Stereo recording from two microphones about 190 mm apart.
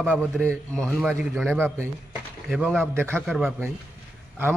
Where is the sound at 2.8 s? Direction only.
15° right (ahead or behind).